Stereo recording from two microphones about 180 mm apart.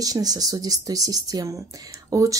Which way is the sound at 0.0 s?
20° right (ahead or behind).